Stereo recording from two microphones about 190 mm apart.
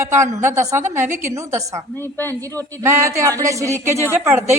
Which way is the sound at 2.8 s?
15° right (ahead or behind).